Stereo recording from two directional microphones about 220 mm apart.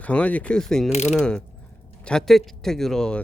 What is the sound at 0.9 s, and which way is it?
Mechanisms, 30° left (ahead or behind).